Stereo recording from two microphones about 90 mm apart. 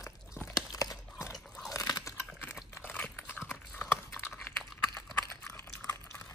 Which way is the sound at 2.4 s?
25° left (ahead or behind).